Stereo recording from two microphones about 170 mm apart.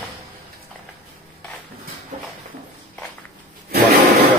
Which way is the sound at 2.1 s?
45° right (ahead or behind).